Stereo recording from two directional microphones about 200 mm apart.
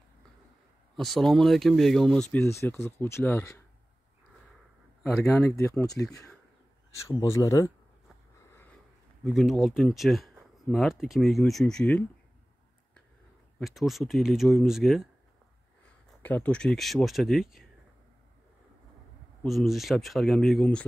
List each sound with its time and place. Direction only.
0.9 s speech: centre (ahead or behind)
2.3 s speech: 15° left (ahead or behind)
5.6 s speech: 15° left (ahead or behind)
7.1 s speech: 15° left (ahead or behind)
9.2 s speech: centre (ahead or behind)
13.6 s speech: centre (ahead or behind)
16.2 s speech: 10° left (ahead or behind)
19.4 s speech: centre (ahead or behind)